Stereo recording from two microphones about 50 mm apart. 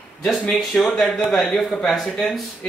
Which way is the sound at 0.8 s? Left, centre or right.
Centre.